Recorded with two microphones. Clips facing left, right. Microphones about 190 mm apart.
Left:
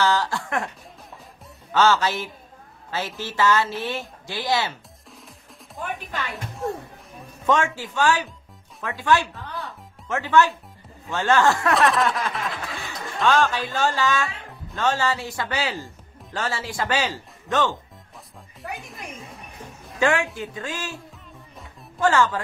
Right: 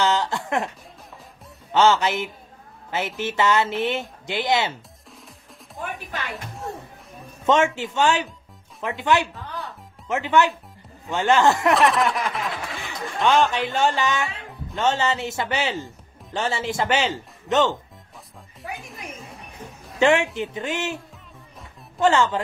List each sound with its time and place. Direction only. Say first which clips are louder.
0.0 s a sound: even; 20° right (ahead or behind)
1.7 s speech: right 1 dB; 20° right (ahead or behind)
6.3 s music: left 4 dB; centre (ahead or behind)
7.4 s speech: right 3 dB; 20° right (ahead or behind)
11.7 s a sound: right 1 dB; centre (ahead or behind)
12.7 s speech: right 1 dB; 20° right (ahead or behind)
14.3 s music: right 3 dB; centre (ahead or behind)
14.8 s speech: right 1 dB; 20° right (ahead or behind)
18.6 s a sound: even; centre (ahead or behind)
20.0 s speech: right 3 dB; 20° right (ahead or behind)
22.0 s speech: right 1 dB; 20° right (ahead or behind)